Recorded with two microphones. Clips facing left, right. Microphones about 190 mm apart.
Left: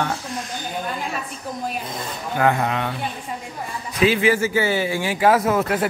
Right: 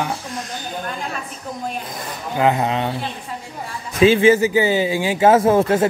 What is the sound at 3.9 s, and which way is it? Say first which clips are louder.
Speech: right 5 dB; 25° right (ahead or behind).